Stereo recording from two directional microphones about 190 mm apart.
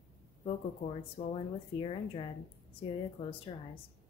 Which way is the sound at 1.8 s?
30° left (ahead or behind).